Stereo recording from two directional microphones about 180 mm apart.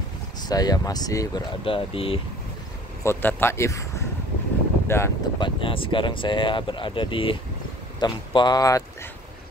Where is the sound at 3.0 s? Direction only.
10° left (ahead or behind).